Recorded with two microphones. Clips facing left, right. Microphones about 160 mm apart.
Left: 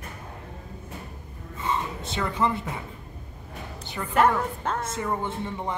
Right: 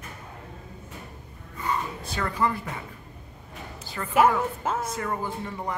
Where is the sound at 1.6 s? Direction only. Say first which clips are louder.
Left 1 dB; 25° left (ahead or behind).